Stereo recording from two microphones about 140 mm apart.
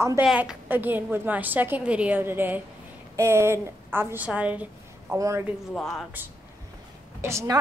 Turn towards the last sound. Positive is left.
turn(degrees=-20)  # may be behind; listen again after turning